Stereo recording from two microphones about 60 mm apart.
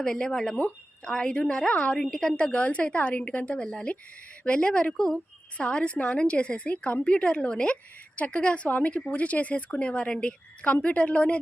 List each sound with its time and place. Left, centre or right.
0.0 s a woman's voice: centre